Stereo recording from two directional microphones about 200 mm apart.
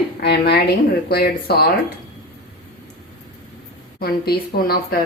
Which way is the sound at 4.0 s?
50° left (ahead or behind).